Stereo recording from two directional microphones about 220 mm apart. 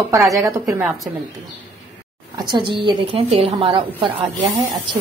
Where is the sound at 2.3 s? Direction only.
20° right (ahead or behind).